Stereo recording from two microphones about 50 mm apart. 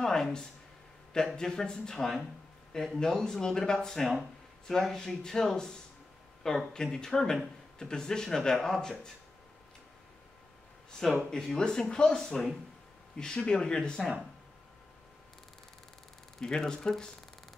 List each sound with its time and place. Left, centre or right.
0.0 s speech: centre
11.2 s speech: centre
16.3 s speech: centre